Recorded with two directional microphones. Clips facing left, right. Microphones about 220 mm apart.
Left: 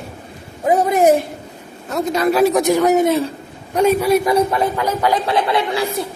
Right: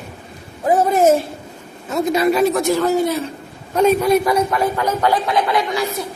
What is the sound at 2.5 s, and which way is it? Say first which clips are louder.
Speech: left 2 dB; 15° left (ahead or behind).